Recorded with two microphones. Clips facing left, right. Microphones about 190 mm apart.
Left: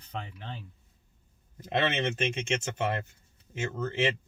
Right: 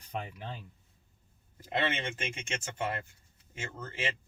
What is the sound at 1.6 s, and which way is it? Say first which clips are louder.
A man's voice: left 4 dB; 25° left (ahead or behind).